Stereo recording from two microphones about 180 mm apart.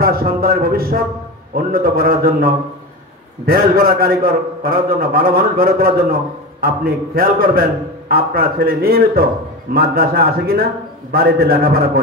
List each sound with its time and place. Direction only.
0.0 s a man's voice: 55° right (ahead or behind)